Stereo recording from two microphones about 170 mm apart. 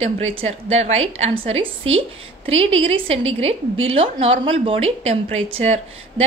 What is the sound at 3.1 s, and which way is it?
A woman's voice, 35° right (ahead or behind).